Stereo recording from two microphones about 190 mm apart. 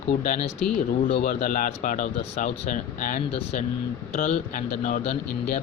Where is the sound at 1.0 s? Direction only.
30° left (ahead or behind).